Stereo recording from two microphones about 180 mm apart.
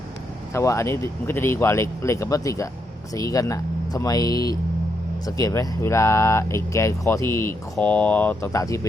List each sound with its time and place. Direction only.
0.5 s speech: 15° left (ahead or behind)